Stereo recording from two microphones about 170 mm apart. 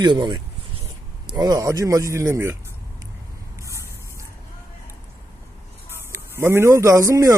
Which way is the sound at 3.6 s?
15° right (ahead or behind).